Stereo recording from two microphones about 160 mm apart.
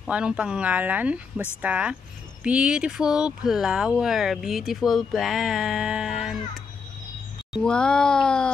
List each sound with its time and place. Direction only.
0.0 s speech: 5° right (ahead or behind)
7.6 s speech: 5° left (ahead or behind)